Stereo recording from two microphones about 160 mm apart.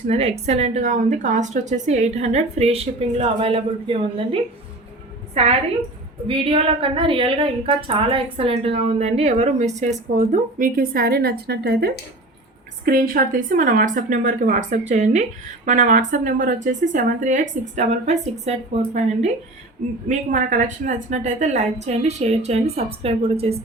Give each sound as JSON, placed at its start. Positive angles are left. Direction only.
{"t": 0.1, "sound": "a woman's voice", "side_deg": -40}
{"t": 10.2, "sound": "a woman's voice", "side_deg": -55}
{"t": 12.8, "sound": "speech", "side_deg": -65}